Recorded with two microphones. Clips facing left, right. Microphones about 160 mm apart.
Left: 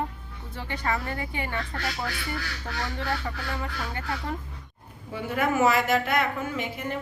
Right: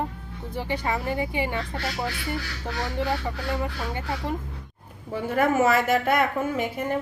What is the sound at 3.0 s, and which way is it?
Speech, 15° right (ahead or behind).